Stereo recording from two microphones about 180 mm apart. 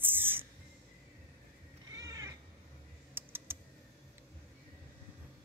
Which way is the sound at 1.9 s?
20° right (ahead or behind).